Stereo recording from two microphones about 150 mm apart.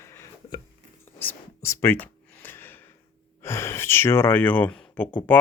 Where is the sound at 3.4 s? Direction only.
15° left (ahead or behind).